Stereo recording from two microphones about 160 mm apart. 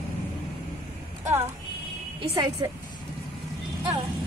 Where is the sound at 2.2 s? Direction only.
30° right (ahead or behind).